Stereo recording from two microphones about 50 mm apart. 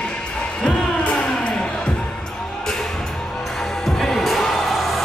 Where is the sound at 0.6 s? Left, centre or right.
Centre.